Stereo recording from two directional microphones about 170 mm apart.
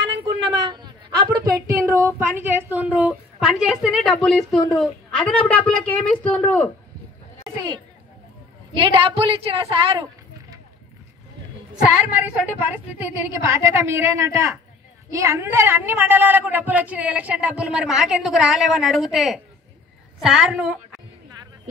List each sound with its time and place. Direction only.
0.2 s a woman's voice: 25° right (ahead or behind); by 6.7 s 10° left (ahead or behind)
8.7 s a woman's voice: 30° right (ahead or behind)
11.7 s a woman's voice: 10° right (ahead or behind)